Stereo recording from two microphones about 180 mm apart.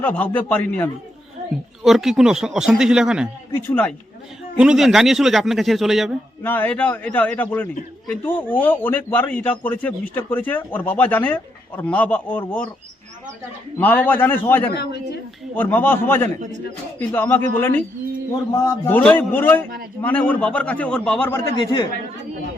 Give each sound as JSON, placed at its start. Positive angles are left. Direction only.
{"t": 0.0, "sound": "a man's voice", "side_deg": 10}
{"t": 1.8, "sound": "speech", "side_deg": 0}
{"t": 3.5, "sound": "a man's voice", "side_deg": 10}
{"t": 4.5, "sound": "speech", "side_deg": -5}
{"t": 6.4, "sound": "a man's voice", "side_deg": 10}
{"t": 13.7, "sound": "a man's voice", "side_deg": 10}
{"t": 21.3, "sound": "speech", "side_deg": 25}